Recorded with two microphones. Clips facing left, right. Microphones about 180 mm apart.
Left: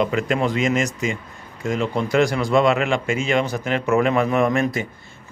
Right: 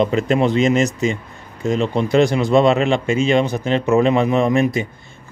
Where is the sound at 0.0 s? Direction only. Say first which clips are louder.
Right 4 dB; 25° right (ahead or behind).